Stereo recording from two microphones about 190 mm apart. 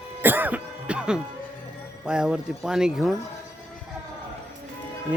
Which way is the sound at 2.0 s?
5° right (ahead or behind).